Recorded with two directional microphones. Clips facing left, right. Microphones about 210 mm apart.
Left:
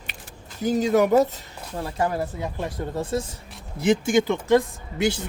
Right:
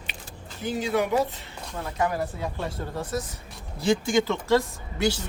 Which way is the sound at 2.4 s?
15° left (ahead or behind).